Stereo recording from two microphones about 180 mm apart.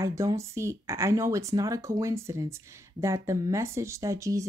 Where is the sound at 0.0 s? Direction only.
15° right (ahead or behind).